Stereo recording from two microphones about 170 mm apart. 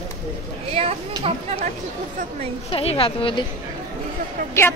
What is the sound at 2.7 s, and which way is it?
Speech, 35° left (ahead or behind).